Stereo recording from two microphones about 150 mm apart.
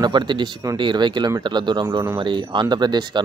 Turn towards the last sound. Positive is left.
turn(degrees=-30)  # may be behind; listen again after turning